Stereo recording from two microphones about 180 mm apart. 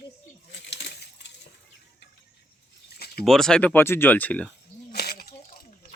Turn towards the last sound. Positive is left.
turn(degrees=60)  # may be behind; listen again after turning